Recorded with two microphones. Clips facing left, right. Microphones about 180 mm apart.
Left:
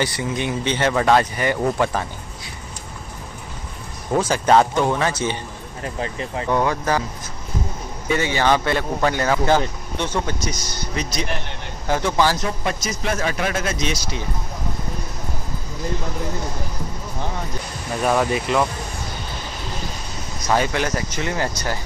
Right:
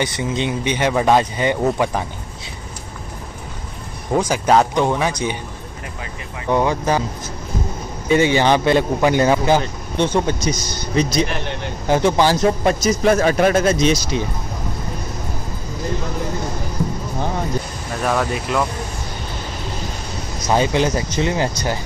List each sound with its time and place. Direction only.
0.0 s a man's voice: 20° right (ahead or behind)
4.1 s speech: 10° right (ahead or behind)
6.5 s speech: 20° right (ahead or behind)
8.1 s a man's voice: 20° right (ahead or behind)
11.9 s a man's voice: 20° right (ahead or behind)
12.4 s a man's voice: 40° right (ahead or behind)
18.0 s speech: 5° left (ahead or behind)
20.4 s a man's voice: 20° right (ahead or behind)